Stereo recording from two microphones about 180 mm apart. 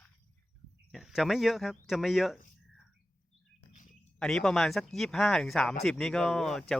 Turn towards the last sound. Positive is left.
turn(degrees=5)  # may be behind; listen again after turning